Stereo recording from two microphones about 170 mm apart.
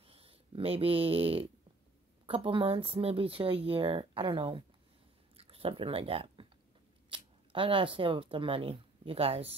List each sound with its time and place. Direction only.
0.0 s speech: 35° right (ahead or behind)